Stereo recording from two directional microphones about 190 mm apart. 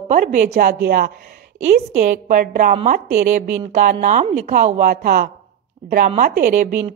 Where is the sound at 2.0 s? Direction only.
40° right (ahead or behind).